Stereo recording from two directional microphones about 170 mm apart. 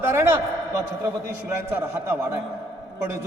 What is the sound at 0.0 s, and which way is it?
A man's voice, 15° right (ahead or behind).